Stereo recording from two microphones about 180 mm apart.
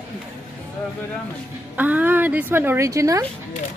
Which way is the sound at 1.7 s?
10° right (ahead or behind).